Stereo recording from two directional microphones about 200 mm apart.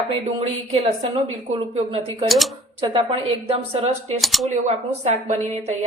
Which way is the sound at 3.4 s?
30° right (ahead or behind).